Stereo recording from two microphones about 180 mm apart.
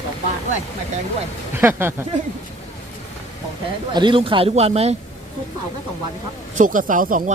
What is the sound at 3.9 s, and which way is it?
Speech, 25° right (ahead or behind).